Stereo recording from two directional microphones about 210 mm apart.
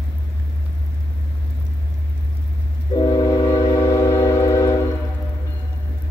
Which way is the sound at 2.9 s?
20° left (ahead or behind).